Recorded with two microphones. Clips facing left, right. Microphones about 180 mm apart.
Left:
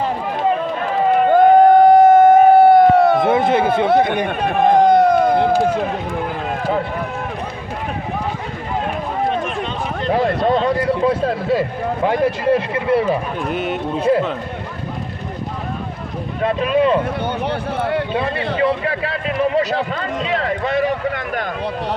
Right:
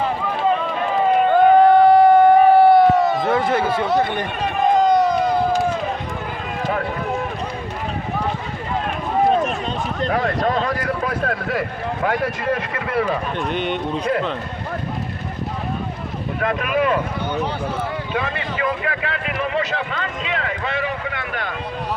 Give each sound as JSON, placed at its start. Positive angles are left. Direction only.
{"t": 1.3, "sound": "a sound", "side_deg": 45}
{"t": 3.2, "sound": "speech", "side_deg": 25}
{"t": 4.3, "sound": "run", "side_deg": 55}
{"t": 10.1, "sound": "speech", "side_deg": 25}
{"t": 13.4, "sound": "a man's voice", "side_deg": 5}
{"t": 16.4, "sound": "speech", "side_deg": 30}
{"t": 17.2, "sound": "a sound", "side_deg": 60}
{"t": 18.1, "sound": "speech", "side_deg": 30}
{"t": 18.5, "sound": "run", "side_deg": 30}